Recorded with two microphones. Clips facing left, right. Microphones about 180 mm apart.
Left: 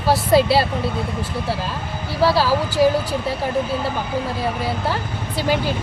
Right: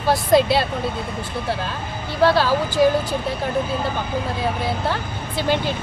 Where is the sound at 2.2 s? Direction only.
5° left (ahead or behind).